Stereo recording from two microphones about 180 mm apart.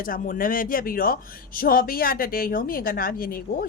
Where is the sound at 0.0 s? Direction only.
50° left (ahead or behind).